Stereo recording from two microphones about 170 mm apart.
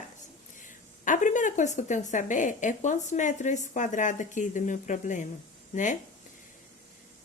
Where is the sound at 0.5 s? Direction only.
50° left (ahead or behind).